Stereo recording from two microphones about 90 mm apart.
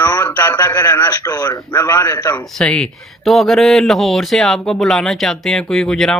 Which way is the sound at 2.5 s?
10° left (ahead or behind).